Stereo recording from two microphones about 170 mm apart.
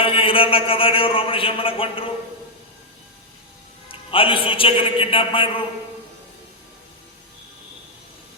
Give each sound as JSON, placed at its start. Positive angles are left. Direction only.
{"t": 0.0, "sound": "a man's voice", "side_deg": 30}
{"t": 4.1, "sound": "a man's voice", "side_deg": 30}